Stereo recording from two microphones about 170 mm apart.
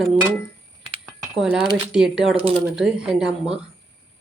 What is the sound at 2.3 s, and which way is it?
Speech, 35° right (ahead or behind).